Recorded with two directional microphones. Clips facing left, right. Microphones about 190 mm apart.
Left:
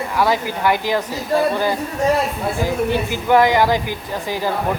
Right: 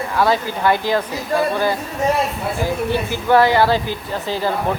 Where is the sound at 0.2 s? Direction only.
15° left (ahead or behind).